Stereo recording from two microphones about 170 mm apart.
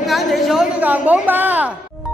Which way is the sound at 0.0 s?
Centre (ahead or behind).